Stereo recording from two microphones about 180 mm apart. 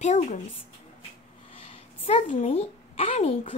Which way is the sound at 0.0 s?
40° left (ahead or behind).